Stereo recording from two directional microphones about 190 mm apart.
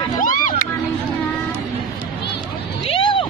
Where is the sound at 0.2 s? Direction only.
45° left (ahead or behind).